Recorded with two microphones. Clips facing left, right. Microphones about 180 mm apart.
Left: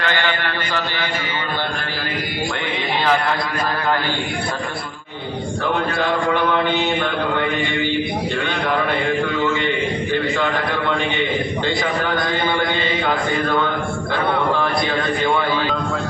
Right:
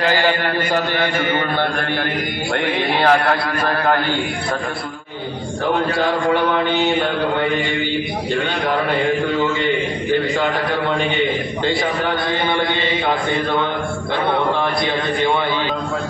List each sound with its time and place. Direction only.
0.0 s a man's voice: 40° right (ahead or behind)
3.0 s a man's voice: 60° right (ahead or behind)